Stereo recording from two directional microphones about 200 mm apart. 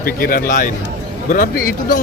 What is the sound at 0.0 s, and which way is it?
A man's voice, 45° left (ahead or behind).